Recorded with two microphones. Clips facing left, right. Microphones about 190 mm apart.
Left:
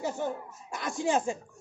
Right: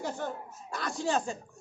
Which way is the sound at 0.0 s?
10° left (ahead or behind).